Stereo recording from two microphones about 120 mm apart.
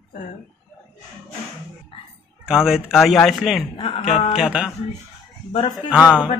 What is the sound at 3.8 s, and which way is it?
Speech, 50° left (ahead or behind).